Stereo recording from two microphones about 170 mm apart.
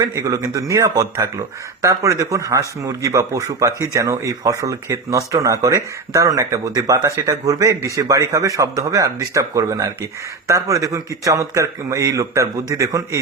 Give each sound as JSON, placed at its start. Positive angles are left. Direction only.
{"t": 0.0, "sound": "a man's voice", "side_deg": -20}